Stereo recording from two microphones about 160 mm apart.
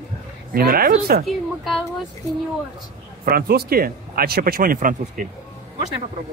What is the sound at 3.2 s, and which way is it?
Speech, 75° right (ahead or behind).